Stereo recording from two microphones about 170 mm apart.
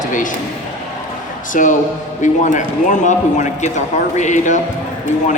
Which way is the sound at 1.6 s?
50° left (ahead or behind).